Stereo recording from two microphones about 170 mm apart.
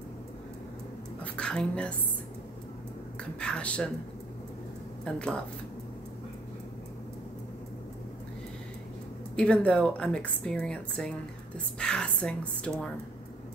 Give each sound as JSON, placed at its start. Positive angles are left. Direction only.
{"t": 1.2, "sound": "a woman's voice", "side_deg": 5}
{"t": 3.3, "sound": "speech", "side_deg": 5}
{"t": 5.0, "sound": "a woman's voice", "side_deg": 5}
{"t": 9.4, "sound": "a woman's voice", "side_deg": 5}